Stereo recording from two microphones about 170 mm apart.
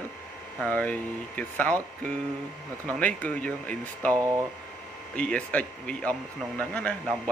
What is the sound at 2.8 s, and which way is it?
Speech, 10° left (ahead or behind).